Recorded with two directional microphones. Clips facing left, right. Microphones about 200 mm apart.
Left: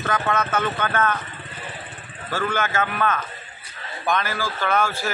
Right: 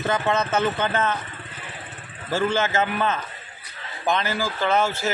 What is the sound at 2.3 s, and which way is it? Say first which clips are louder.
A man's voice: right 2 dB; 25° right (ahead or behind).